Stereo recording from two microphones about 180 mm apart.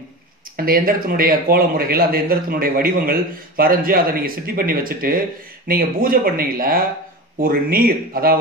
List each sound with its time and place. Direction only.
0.6 s a man's voice: 55° right (ahead or behind)